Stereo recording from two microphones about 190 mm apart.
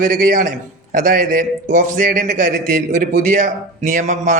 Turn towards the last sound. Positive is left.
turn(degrees=-40)  # may be behind; listen again after turning